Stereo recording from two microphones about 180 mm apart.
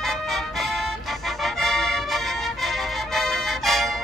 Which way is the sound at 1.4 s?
Centre (ahead or behind).